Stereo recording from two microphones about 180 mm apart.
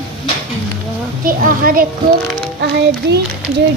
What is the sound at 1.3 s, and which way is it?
Speech, 50° right (ahead or behind).